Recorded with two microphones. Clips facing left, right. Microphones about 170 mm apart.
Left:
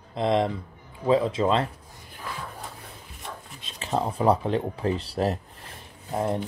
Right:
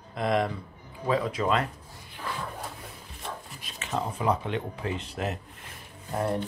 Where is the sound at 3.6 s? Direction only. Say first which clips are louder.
Left 5 dB; 35° left (ahead or behind).